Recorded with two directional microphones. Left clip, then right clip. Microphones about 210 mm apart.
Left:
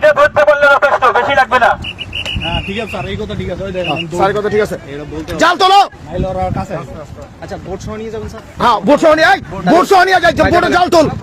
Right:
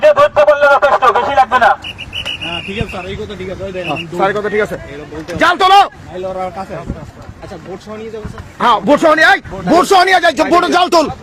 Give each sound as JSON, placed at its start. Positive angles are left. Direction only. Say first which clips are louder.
{"t": 0.0, "sound": "a sound", "louder": "even", "side_deg": 5}
{"t": 2.5, "sound": "a sound", "louder": "left 2 dB", "side_deg": 50}
{"t": 2.9, "sound": "speech", "louder": "left 2 dB", "side_deg": 50}
{"t": 3.9, "sound": "speech", "louder": "even", "side_deg": 15}
{"t": 6.2, "sound": "speech", "louder": "left 2 dB", "side_deg": 55}
{"t": 8.5, "sound": "a man's voice", "louder": "even", "side_deg": 5}